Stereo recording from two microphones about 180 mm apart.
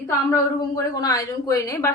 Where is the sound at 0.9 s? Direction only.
20° left (ahead or behind).